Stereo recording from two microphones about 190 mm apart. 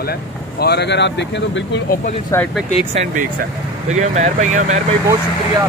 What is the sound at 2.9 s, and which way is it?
Speech, 35° right (ahead or behind).